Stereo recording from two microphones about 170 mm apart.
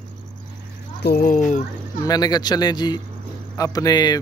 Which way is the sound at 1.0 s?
60° left (ahead or behind).